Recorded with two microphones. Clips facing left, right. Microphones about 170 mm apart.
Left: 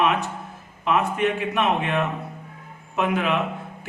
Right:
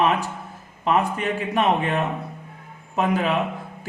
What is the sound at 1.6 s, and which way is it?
A man's voice, 40° right (ahead or behind).